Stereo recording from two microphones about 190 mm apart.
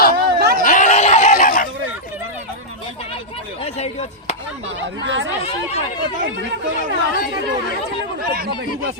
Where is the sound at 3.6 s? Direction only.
35° left (ahead or behind).